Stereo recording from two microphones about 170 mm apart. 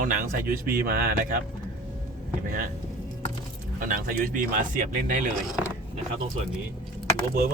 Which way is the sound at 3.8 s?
55° right (ahead or behind).